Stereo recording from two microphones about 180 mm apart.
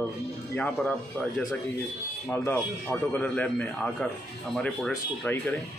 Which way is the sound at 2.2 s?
15° left (ahead or behind).